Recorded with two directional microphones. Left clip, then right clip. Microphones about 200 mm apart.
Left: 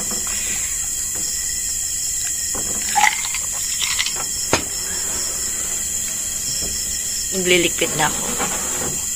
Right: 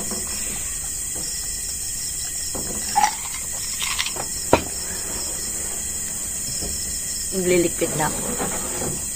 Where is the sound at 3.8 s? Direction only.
30° right (ahead or behind).